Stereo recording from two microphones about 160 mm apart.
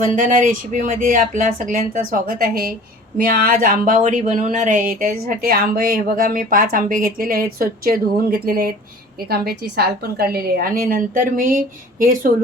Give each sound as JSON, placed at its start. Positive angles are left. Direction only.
{"t": 0.2, "sound": "speech", "side_deg": -55}
{"t": 9.3, "sound": "a woman's voice", "side_deg": -75}